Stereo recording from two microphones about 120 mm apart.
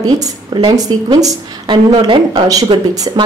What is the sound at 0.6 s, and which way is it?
A woman's voice, 35° right (ahead or behind).